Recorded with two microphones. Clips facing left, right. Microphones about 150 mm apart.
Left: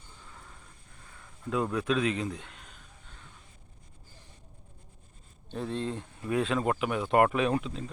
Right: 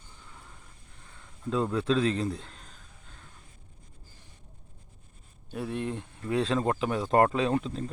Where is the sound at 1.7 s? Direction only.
30° right (ahead or behind).